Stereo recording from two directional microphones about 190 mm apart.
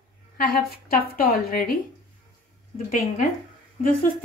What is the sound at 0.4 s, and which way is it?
A woman's voice, 50° left (ahead or behind).